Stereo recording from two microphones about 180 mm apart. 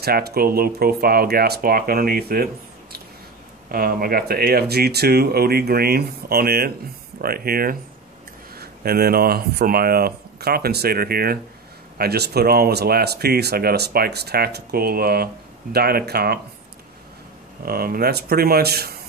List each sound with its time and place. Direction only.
0.0 s speech: 60° right (ahead or behind)
17.6 s speech: 55° right (ahead or behind)